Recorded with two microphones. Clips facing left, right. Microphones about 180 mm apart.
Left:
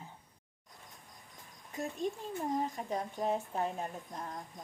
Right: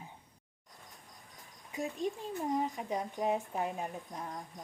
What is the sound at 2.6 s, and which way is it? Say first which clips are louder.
A woman's voice: right 1 dB; 15° right (ahead or behind).